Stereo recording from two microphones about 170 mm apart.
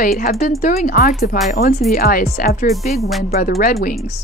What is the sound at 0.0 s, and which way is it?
Speech, 60° left (ahead or behind).